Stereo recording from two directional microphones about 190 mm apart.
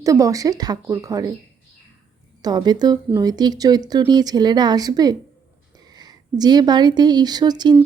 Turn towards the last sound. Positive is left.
turn(degrees=-20)  # may be behind; listen again after turning